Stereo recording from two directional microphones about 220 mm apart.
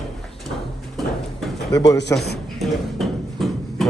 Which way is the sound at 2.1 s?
10° left (ahead or behind).